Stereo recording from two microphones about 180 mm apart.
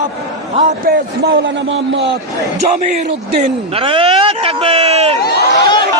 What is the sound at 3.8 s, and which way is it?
A man's voice, 30° right (ahead or behind).